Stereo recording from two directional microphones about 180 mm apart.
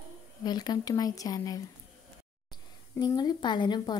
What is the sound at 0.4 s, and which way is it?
Speech, 20° left (ahead or behind).